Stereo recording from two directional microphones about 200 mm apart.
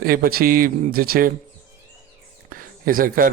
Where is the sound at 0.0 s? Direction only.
45° right (ahead or behind).